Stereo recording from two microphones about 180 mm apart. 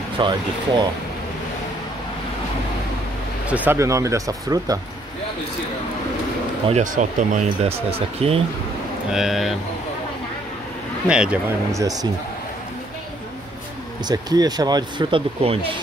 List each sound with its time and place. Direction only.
0.2 s speech: 25° right (ahead or behind)
3.4 s speech: 10° right (ahead or behind)
6.7 s speech: 45° right (ahead or behind)
9.1 s speech: centre (ahead or behind)
11.1 s speech: 5° right (ahead or behind)
11.7 s speech: 20° right (ahead or behind)
14.0 s speech: 20° right (ahead or behind)